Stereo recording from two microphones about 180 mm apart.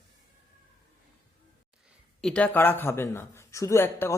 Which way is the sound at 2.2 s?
5° left (ahead or behind).